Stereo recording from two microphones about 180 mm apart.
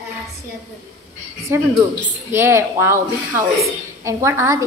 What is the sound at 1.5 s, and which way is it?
Speech, 15° right (ahead or behind).